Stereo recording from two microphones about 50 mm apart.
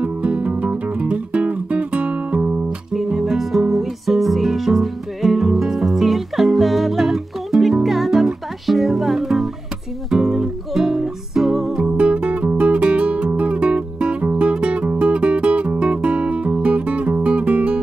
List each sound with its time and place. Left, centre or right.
0.0 s music: right
2.9 s music: centre; by 17.7 s right